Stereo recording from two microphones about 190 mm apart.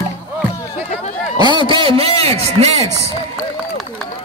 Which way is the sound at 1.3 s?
20° right (ahead or behind).